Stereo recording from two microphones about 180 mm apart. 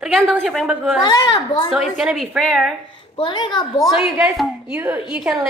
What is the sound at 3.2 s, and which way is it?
Speech, 25° left (ahead or behind).